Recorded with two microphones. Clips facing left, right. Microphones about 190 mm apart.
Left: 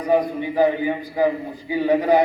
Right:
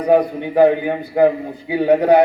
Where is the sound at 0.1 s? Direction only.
60° right (ahead or behind).